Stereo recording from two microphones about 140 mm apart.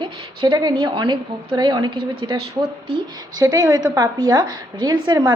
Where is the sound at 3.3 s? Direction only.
30° right (ahead or behind).